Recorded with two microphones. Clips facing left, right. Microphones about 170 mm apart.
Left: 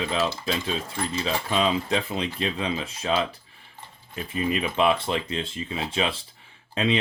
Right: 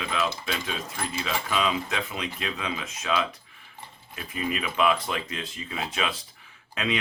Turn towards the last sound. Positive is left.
turn(degrees=30)  # may be behind; listen again after turning